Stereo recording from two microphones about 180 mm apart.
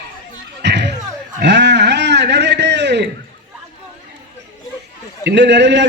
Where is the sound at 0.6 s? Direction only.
75° right (ahead or behind).